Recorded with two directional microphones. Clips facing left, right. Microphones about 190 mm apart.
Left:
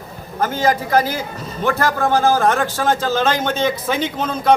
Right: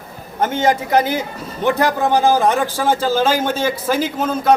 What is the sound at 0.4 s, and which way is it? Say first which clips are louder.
A man's voice: right 1 dB; 25° right (ahead or behind).